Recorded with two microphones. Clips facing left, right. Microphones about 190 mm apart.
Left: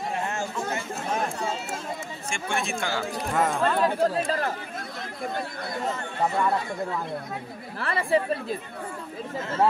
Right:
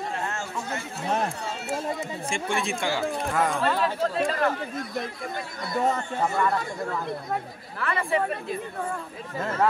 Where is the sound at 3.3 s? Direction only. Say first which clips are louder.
Left 2 dB; centre (ahead or behind).